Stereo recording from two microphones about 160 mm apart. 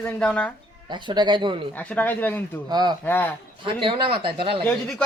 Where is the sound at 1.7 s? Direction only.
10° left (ahead or behind).